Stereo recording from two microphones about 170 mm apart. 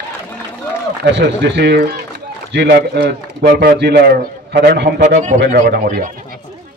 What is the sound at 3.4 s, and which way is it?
A man's voice, 60° right (ahead or behind).